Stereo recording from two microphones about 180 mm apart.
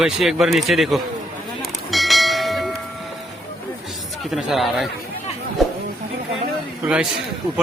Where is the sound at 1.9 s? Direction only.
Centre (ahead or behind).